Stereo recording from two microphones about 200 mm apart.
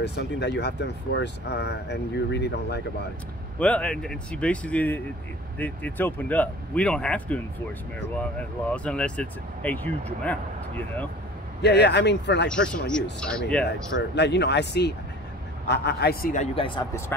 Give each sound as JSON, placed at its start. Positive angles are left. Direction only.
{"t": 0.0, "sound": "speech", "side_deg": 55}
{"t": 3.5, "sound": "speech", "side_deg": 5}
{"t": 11.6, "sound": "speech", "side_deg": 55}
{"t": 12.4, "sound": "speech", "side_deg": 5}
{"t": 14.1, "sound": "a man's voice", "side_deg": 55}
{"t": 16.5, "sound": "speech", "side_deg": 25}